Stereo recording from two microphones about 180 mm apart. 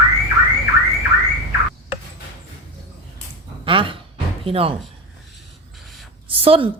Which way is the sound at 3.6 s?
30° right (ahead or behind).